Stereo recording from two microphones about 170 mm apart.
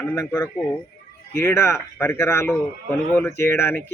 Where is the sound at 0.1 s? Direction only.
15° left (ahead or behind).